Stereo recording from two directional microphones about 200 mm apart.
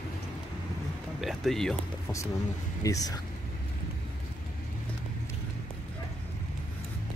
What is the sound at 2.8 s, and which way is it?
Speech, 15° left (ahead or behind).